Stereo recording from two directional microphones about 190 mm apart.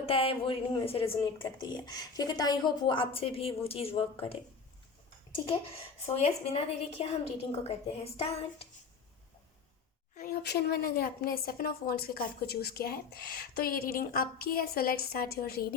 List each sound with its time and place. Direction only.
0.0 s a woman's voice: 30° left (ahead or behind)
6.1 s speech: 35° left (ahead or behind)
10.2 s a woman's voice: 55° left (ahead or behind)